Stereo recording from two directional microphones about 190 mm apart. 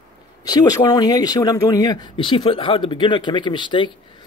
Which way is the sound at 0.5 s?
20° left (ahead or behind).